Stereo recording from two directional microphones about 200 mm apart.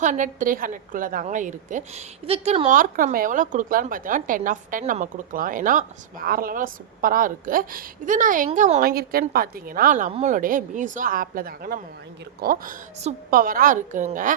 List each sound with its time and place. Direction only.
0.0 s a woman's voice: 40° right (ahead or behind)